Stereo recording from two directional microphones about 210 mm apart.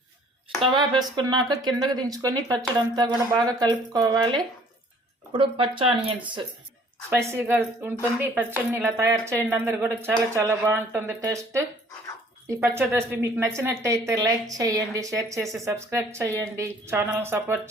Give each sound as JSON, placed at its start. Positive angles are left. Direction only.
{"t": 0.6, "sound": "speech", "side_deg": -20}
{"t": 7.1, "sound": "speech", "side_deg": -10}